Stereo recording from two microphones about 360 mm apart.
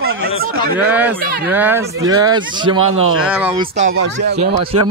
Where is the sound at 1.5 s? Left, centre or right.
Centre.